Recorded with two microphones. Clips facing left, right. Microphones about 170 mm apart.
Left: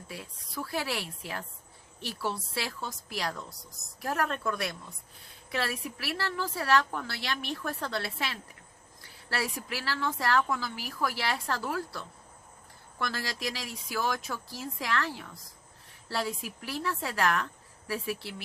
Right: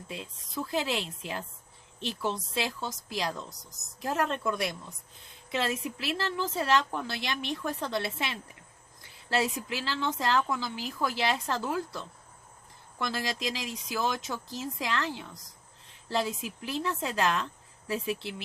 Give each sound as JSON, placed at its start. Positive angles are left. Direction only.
{"t": 0.1, "sound": "a woman's voice", "side_deg": -20}